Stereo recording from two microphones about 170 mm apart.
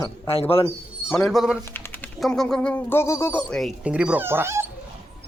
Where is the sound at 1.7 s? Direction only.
10° left (ahead or behind); by 4.6 s 15° right (ahead or behind).